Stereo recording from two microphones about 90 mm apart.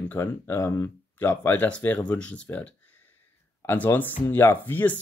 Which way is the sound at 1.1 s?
20° left (ahead or behind).